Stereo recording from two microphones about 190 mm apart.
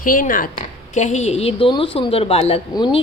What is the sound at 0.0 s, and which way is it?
A woman's voice, 45° left (ahead or behind).